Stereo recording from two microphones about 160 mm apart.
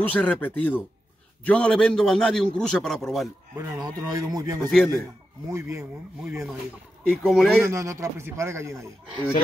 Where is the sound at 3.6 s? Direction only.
25° right (ahead or behind).